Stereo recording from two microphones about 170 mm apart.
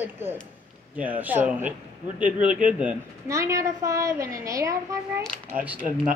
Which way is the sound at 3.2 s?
20° right (ahead or behind).